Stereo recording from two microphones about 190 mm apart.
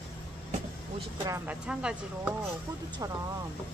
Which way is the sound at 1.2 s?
15° right (ahead or behind).